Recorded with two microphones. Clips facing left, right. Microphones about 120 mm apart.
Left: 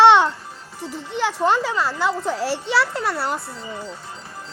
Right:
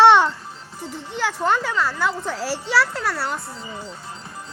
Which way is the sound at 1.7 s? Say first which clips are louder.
Left 1 dB; 25° left (ahead or behind).